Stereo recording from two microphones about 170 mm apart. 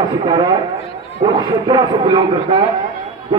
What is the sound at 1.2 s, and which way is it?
A man's voice, 25° right (ahead or behind).